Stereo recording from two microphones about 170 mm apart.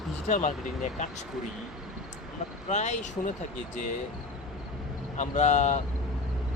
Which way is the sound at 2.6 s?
45° left (ahead or behind).